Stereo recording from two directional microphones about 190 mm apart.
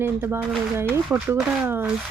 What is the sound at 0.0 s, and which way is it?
Speech, 10° right (ahead or behind).